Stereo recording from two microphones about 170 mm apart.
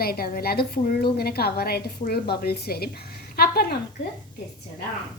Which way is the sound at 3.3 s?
65° left (ahead or behind).